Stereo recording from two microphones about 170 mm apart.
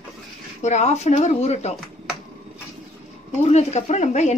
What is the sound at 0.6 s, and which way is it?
Speech, 40° left (ahead or behind).